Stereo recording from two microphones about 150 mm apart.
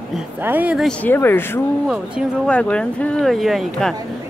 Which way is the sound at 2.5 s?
10° left (ahead or behind).